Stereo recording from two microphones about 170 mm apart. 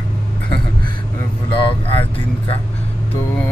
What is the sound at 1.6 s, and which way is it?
Speech, 30° left (ahead or behind).